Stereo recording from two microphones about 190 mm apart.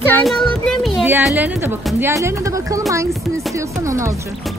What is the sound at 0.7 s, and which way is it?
Music, centre (ahead or behind).